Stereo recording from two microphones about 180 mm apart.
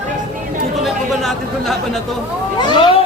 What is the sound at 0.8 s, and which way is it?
Speech, centre (ahead or behind).